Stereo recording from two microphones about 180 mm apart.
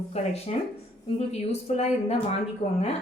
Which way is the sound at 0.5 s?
40° left (ahead or behind).